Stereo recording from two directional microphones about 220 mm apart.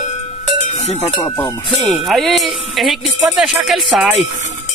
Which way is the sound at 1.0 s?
15° left (ahead or behind).